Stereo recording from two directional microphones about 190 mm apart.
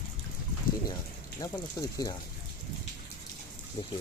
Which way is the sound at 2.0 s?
20° left (ahead or behind).